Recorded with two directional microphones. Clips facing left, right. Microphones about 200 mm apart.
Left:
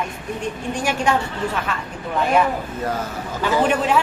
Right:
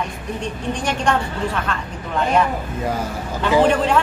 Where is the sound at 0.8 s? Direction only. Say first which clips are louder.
Left 1 dB; 5° left (ahead or behind).